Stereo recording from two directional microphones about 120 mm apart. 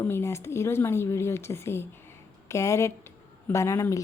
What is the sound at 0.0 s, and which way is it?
A woman's voice, 20° left (ahead or behind).